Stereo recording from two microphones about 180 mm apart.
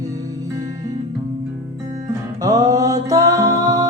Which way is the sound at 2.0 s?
20° right (ahead or behind).